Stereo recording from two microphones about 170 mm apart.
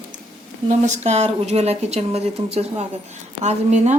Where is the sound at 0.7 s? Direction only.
45° right (ahead or behind).